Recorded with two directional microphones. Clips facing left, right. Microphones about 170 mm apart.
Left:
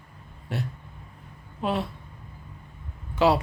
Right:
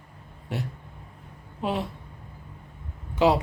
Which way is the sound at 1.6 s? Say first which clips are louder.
Left 1 dB; 15° right (ahead or behind).